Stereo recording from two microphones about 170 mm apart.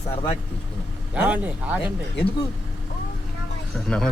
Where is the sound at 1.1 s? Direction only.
10° right (ahead or behind).